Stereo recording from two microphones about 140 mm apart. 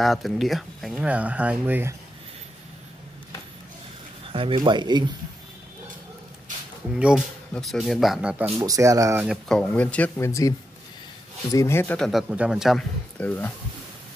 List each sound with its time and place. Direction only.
0.0 s speech: centre (ahead or behind)
4.3 s speech: 40° right (ahead or behind)
7.0 s speech: 5° right (ahead or behind)
7.5 s speech: 5° left (ahead or behind)
8.5 s speech: 25° right (ahead or behind)
9.5 s speech: 10° left (ahead or behind)
11.5 s speech: 20° left (ahead or behind)
12.0 s speech: centre (ahead or behind)
13.2 s speech: 10° left (ahead or behind)